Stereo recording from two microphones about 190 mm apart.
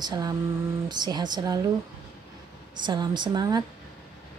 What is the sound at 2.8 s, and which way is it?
Speech, 25° right (ahead or behind).